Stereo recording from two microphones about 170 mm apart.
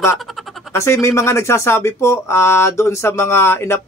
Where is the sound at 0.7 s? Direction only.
15° left (ahead or behind).